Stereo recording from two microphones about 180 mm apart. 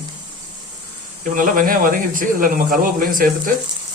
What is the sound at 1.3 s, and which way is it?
Speech, 50° right (ahead or behind).